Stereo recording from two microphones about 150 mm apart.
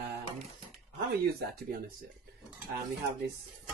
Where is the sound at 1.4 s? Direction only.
80° right.